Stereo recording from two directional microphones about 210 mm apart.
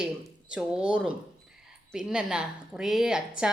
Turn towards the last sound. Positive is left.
turn(degrees=0)  # may be behind; listen again after turning